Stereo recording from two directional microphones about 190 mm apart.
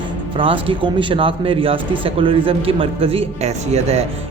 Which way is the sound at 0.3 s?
25° right (ahead or behind).